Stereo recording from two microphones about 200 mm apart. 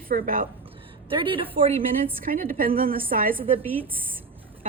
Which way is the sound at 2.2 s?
45° right (ahead or behind).